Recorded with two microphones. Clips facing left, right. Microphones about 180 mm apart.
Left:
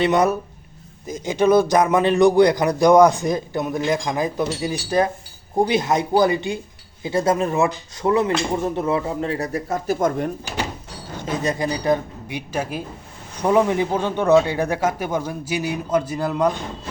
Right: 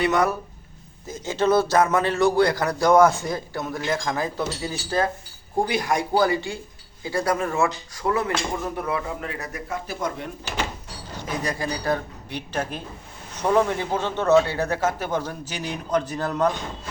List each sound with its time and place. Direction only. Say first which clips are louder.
0.0 s a man's voice: left 4 dB; 20° left (ahead or behind); by 10.3 s 45° left (ahead or behind)
11.4 s a man's voice: left 6 dB; 20° left (ahead or behind)